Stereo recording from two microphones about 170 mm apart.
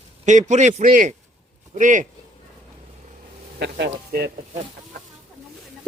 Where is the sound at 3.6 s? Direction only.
75° right (ahead or behind).